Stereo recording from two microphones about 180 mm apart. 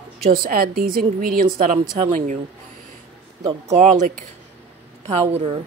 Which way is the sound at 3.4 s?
25° right (ahead or behind).